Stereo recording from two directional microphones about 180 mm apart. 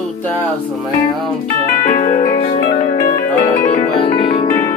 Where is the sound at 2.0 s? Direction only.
30° left (ahead or behind).